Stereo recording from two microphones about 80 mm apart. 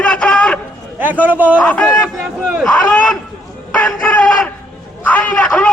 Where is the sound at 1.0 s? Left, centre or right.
Right.